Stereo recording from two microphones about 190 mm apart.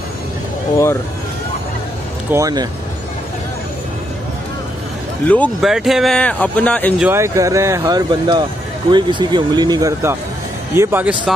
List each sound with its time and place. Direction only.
2.3 s speech: 20° right (ahead or behind)
5.2 s speech: 5° left (ahead or behind)
7.0 s speech: 10° right (ahead or behind)